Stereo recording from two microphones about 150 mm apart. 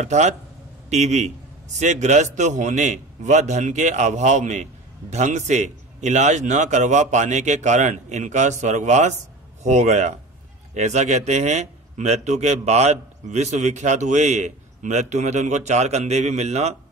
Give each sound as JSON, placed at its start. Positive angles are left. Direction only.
{"t": 0.0, "sound": "a man's voice", "side_deg": -50}